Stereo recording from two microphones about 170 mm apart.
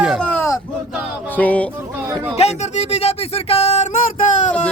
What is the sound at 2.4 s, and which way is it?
Speech, 40° left (ahead or behind).